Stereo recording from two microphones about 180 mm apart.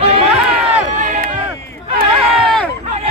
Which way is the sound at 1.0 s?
45° right (ahead or behind).